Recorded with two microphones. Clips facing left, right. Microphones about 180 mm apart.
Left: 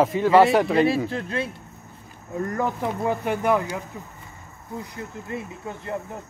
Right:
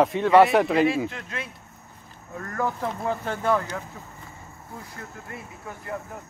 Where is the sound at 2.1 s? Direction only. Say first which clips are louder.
Left 6 dB; 20° left (ahead or behind).